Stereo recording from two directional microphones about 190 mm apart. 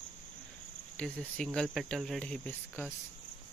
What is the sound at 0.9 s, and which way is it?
Speech, 5° left (ahead or behind).